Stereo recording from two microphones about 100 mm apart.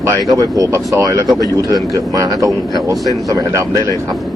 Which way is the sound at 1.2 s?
Centre (ahead or behind).